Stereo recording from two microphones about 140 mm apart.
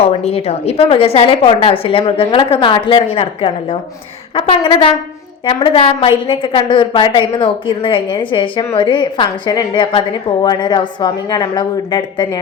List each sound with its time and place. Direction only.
0.0 s a woman's voice: 45° left (ahead or behind); by 12.4 s 30° left (ahead or behind)